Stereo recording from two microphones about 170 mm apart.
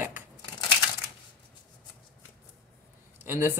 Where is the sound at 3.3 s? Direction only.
15° right (ahead or behind).